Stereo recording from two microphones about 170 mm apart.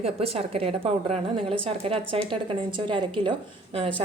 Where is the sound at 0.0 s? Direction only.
35° right (ahead or behind).